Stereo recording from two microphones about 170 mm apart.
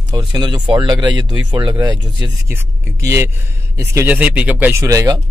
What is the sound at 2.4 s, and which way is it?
Speech, 15° right (ahead or behind).